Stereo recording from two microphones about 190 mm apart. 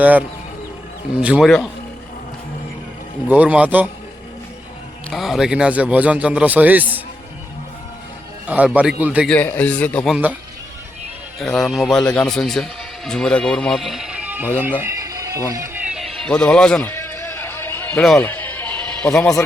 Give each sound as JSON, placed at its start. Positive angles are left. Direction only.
{"t": 0.0, "sound": "a man's voice", "side_deg": -10}
{"t": 3.2, "sound": "a man's voice", "side_deg": -10}
{"t": 5.1, "sound": "a man's voice", "side_deg": 0}
{"t": 8.4, "sound": "a man's voice", "side_deg": -5}
{"t": 9.3, "sound": "a man's voice", "side_deg": 10}
{"t": 11.3, "sound": "a man's voice", "side_deg": 0}
{"t": 15.9, "sound": "music", "side_deg": 0}
{"t": 18.2, "sound": "bleat", "side_deg": 10}